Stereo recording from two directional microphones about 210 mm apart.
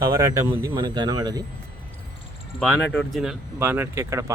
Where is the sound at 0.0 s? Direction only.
15° right (ahead or behind).